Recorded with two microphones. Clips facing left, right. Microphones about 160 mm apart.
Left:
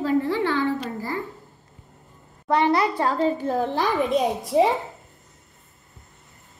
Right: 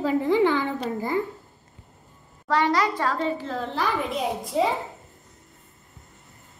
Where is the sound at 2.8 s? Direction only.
30° left (ahead or behind).